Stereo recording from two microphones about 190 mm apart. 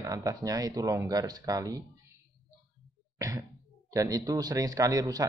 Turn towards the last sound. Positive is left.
turn(degrees=-20)  # may be behind; listen again after turning